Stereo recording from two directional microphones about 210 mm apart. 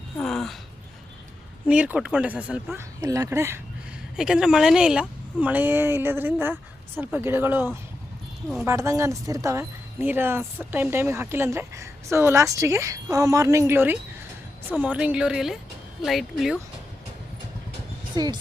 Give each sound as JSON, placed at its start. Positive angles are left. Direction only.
{"t": 0.2, "sound": "a sound", "side_deg": 0}
{"t": 1.6, "sound": "speech", "side_deg": -5}
{"t": 18.1, "sound": "speech", "side_deg": -20}